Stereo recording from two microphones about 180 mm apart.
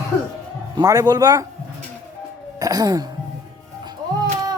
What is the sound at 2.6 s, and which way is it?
Speech, 20° right (ahead or behind).